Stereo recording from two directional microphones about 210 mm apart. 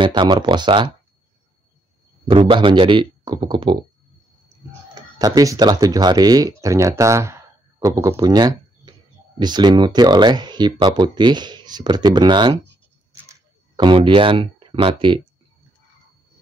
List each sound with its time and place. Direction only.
0.0 s speech: 20° right (ahead or behind)
2.2 s speech: 25° right (ahead or behind)
5.2 s speech: 15° right (ahead or behind)
13.7 s speech: 25° right (ahead or behind)